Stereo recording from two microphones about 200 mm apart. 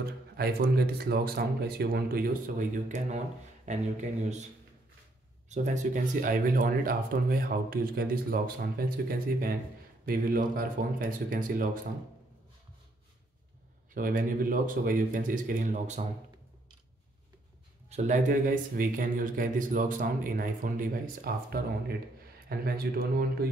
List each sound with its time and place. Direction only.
0.4 s speech: 50° right (ahead or behind)
5.5 s speech: 35° right (ahead or behind)
13.9 s speech: 45° right (ahead or behind)
17.8 s speech: 35° right (ahead or behind); by 23.2 s 50° right (ahead or behind)